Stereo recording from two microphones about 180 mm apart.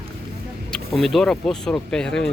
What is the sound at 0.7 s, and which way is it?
Speech, centre (ahead or behind).